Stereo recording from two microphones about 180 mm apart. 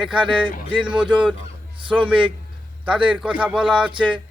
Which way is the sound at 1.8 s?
25° right (ahead or behind).